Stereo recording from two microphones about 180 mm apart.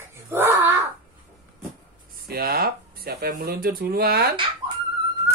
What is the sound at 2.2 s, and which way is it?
Speech, 60° right (ahead or behind).